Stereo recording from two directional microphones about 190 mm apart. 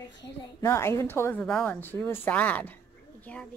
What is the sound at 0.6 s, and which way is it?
A woman's voice, 15° left (ahead or behind).